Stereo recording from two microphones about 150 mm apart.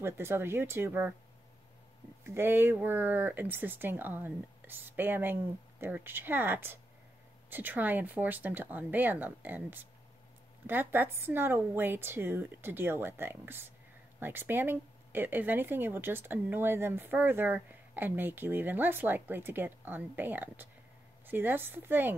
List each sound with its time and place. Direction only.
0.0 s speech: 15° right (ahead or behind)
2.2 s speech: 15° right (ahead or behind)